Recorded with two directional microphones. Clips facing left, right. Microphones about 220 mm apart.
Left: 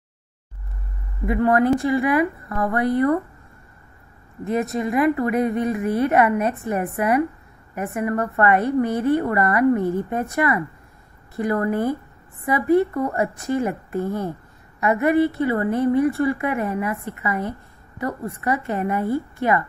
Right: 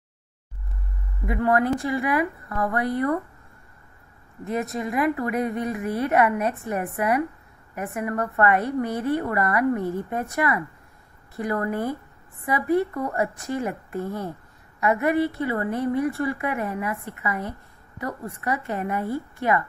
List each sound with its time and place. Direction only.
1.3 s a woman's voice: 25° left (ahead or behind)
4.5 s a woman's voice: 25° left (ahead or behind)